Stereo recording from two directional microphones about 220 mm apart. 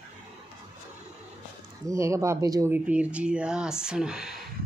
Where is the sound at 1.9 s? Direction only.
15° right (ahead or behind).